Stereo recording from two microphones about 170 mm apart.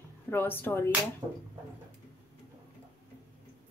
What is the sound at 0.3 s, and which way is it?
Speech, 10° left (ahead or behind).